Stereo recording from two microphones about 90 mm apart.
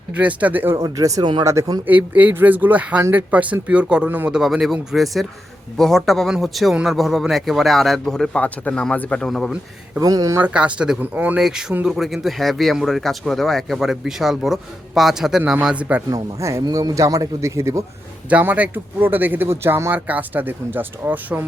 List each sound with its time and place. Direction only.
0.2 s speech: 15° right (ahead or behind)
0.8 s a man's voice: 40° right (ahead or behind)
1.2 s speech: 55° right (ahead or behind)
1.5 s a man's voice: 40° right (ahead or behind)
1.9 s speech: 15° right (ahead or behind); by 9.3 s 15° left (ahead or behind)
10.0 s a man's voice: 40° right (ahead or behind)
10.4 s speech: 15° right (ahead or behind)
11.3 s speech: 5° right (ahead or behind)
15.6 s speech: 15° right (ahead or behind)
16.0 s a man's voice: 40° right (ahead or behind)
18.3 s speech: 15° right (ahead or behind)